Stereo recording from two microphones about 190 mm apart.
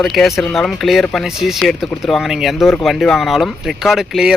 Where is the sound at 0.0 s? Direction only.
Centre (ahead or behind).